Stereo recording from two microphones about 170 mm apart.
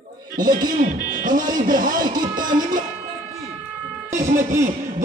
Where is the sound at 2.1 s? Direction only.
25° right (ahead or behind).